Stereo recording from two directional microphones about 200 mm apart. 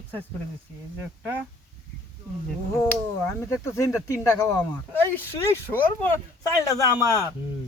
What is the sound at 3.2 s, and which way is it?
Speech, 15° left (ahead or behind).